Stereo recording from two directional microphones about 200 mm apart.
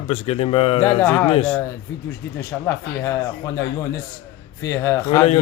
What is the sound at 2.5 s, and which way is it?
Speech, 10° left (ahead or behind).